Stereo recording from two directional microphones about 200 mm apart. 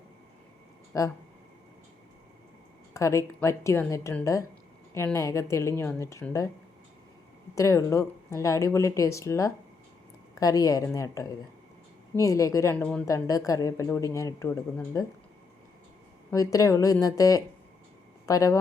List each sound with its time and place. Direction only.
2.9 s a woman's voice: 15° left (ahead or behind)
7.5 s a woman's voice: 15° left (ahead or behind)
16.3 s a woman's voice: 15° left (ahead or behind)